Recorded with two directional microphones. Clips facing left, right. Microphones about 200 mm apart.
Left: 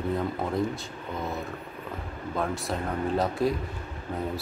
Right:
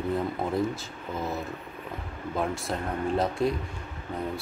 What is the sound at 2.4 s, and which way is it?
Speech, centre (ahead or behind).